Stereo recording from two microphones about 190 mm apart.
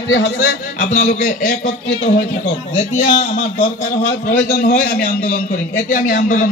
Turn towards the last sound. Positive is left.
turn(degrees=45)  # may be behind; listen again after turning